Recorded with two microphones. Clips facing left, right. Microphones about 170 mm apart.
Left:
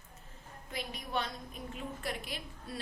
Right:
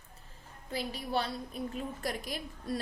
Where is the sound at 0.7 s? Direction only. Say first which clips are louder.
Right 4 dB; 35° right (ahead or behind).